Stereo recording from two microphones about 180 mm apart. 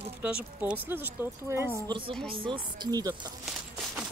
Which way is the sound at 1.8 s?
25° right (ahead or behind).